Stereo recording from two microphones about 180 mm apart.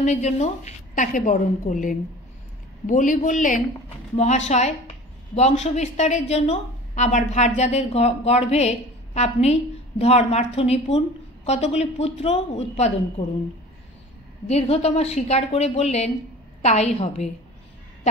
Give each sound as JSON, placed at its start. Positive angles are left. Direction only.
{"t": 0.0, "sound": "a woman's voice", "side_deg": 40}
{"t": 14.5, "sound": "a woman's voice", "side_deg": 35}